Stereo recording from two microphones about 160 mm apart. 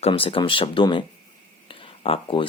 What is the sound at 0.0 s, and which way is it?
Speech, 35° left (ahead or behind).